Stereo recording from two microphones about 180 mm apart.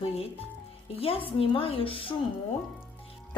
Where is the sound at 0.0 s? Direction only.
35° left (ahead or behind).